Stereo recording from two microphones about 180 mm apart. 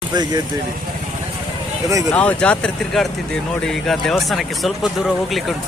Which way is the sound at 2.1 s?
5° left (ahead or behind).